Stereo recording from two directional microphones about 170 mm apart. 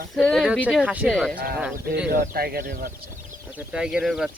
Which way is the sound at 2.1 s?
65° right (ahead or behind).